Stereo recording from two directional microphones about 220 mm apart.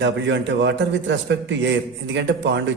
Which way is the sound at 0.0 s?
55° right (ahead or behind).